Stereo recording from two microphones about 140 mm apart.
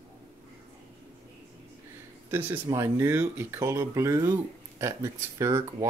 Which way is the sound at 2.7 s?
20° right (ahead or behind).